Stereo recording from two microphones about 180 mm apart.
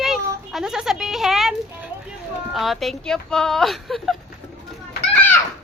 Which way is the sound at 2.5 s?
Centre (ahead or behind).